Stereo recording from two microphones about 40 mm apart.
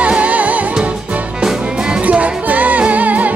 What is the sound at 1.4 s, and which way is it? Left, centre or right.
Music, centre.